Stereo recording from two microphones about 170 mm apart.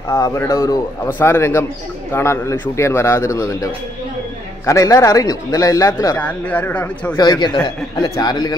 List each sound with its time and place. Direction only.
0.1 s a man's voice: 15° left (ahead or behind)
4.6 s a man's voice: 20° left (ahead or behind)
7.2 s a man's voice: 25° left (ahead or behind)